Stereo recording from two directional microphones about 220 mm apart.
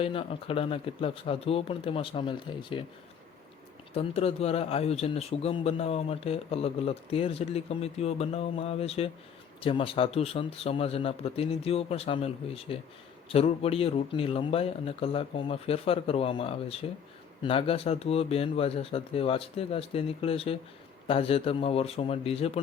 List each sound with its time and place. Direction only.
0.0 s speech: 25° left (ahead or behind)
3.9 s speech: 25° left (ahead or behind)